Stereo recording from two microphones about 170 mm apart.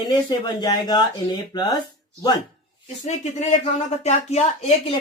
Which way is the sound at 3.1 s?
40° left (ahead or behind).